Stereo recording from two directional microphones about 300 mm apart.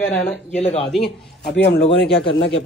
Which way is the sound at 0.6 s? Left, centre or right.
Left.